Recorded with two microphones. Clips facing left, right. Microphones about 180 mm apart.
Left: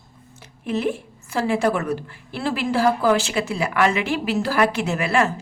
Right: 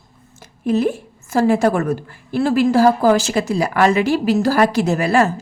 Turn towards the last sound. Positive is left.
turn(degrees=-40)  # may be behind; listen again after turning